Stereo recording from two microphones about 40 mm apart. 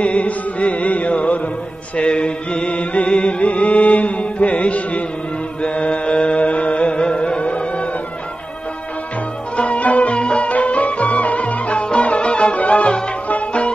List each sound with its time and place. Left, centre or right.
0.0 s music: left
9.6 s music: left